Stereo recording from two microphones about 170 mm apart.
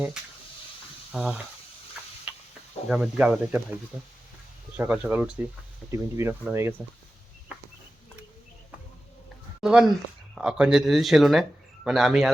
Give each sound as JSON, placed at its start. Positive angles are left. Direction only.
{"t": 1.1, "sound": "speech", "side_deg": -5}
{"t": 2.9, "sound": "speech", "side_deg": -5}
{"t": 4.8, "sound": "speech", "side_deg": -10}
{"t": 9.6, "sound": "speech", "side_deg": -5}